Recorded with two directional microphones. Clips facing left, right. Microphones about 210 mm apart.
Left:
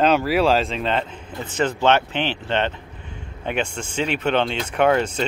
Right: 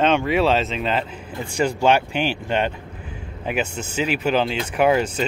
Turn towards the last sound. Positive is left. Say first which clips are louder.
# even
turn(degrees=-5)  # may be behind; listen again after turning